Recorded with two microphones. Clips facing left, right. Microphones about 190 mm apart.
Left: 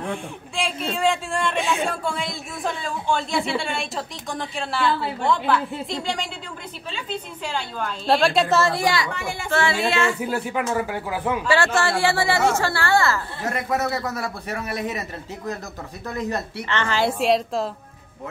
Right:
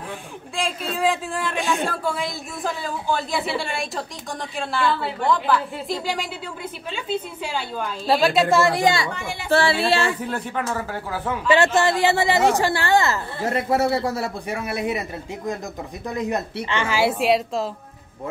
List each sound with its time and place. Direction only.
0.6 s speech: centre (ahead or behind)
7.4 s speech: 10° right (ahead or behind)
8.5 s a woman's voice: 15° right (ahead or behind); by 10.1 s 30° right (ahead or behind)
10.2 s speech: 5° left (ahead or behind)
11.4 s a woman's voice: 20° right (ahead or behind)
14.5 s a woman's voice: 10° right (ahead or behind)